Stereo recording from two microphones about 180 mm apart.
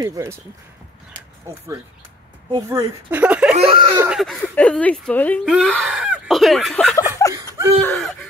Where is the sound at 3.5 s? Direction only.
30° right (ahead or behind).